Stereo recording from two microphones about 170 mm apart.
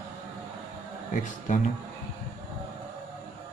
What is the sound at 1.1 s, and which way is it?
Speech, 50° left (ahead or behind).